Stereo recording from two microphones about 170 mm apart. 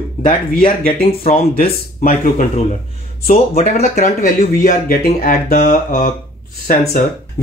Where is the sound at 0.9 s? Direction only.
55° left (ahead or behind).